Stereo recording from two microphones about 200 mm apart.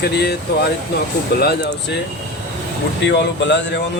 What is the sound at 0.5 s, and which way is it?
Speech, 55° left (ahead or behind).